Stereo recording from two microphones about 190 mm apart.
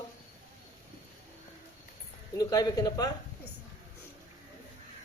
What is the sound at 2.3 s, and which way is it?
Speech, 20° left (ahead or behind).